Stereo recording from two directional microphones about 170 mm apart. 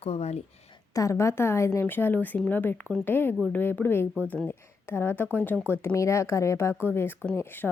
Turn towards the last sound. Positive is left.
turn(degrees=10)  # may be behind; listen again after turning